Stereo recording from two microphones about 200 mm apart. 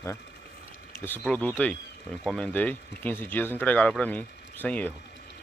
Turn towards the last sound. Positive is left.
turn(degrees=5)  # may be behind; listen again after turning